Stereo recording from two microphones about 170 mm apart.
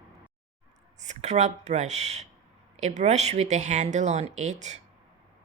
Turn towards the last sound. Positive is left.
turn(degrees=-45)  # may be behind; listen again after turning